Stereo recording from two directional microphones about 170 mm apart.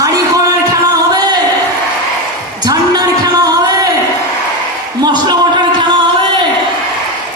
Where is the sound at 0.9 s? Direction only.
25° right (ahead or behind).